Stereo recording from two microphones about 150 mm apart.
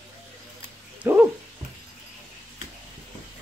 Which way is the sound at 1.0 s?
10° right (ahead or behind).